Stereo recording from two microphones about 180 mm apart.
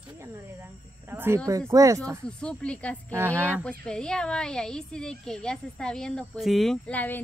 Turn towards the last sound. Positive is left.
turn(degrees=10)  # may be behind; listen again after turning